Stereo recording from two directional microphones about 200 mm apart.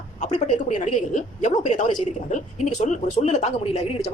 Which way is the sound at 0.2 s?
35° left (ahead or behind).